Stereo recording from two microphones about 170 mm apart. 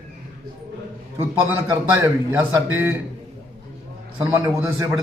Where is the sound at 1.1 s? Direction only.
15° right (ahead or behind).